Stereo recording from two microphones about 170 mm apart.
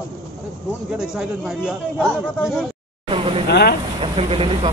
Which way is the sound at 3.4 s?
90° left.